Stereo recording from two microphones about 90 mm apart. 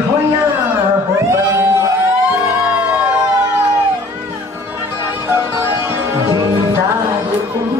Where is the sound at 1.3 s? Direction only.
30° right (ahead or behind).